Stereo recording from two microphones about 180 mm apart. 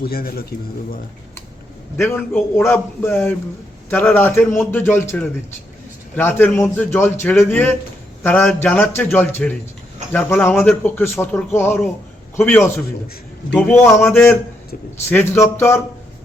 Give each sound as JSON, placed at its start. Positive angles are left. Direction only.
{"t": 0.0, "sound": "a man's voice", "side_deg": 55}
{"t": 2.0, "sound": "a man's voice", "side_deg": 10}